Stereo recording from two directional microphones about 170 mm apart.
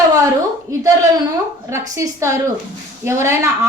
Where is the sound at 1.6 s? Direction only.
15° right (ahead or behind).